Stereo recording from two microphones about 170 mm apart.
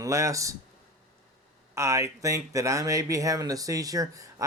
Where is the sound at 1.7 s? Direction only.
15° right (ahead or behind).